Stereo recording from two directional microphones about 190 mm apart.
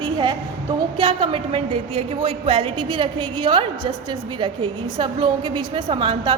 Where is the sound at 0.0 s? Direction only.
25° right (ahead or behind).